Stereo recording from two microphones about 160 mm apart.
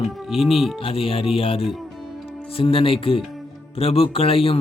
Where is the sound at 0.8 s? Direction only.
35° left (ahead or behind).